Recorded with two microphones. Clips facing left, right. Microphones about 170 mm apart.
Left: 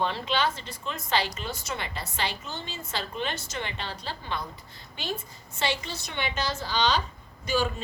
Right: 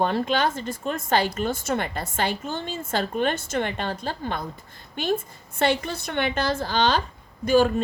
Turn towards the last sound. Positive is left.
turn(degrees=-50)  # may be behind; listen again after turning